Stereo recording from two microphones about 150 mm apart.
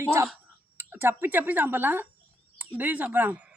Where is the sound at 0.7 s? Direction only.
15° right (ahead or behind).